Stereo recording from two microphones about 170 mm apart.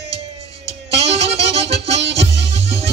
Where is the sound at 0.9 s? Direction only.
35° right (ahead or behind).